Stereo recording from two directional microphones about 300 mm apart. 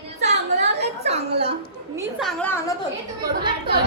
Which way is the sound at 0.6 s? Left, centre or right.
Right.